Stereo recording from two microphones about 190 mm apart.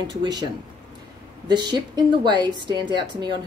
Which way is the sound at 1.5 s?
20° right (ahead or behind).